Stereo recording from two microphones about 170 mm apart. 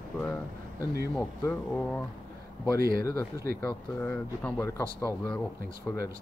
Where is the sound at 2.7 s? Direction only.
60° right (ahead or behind).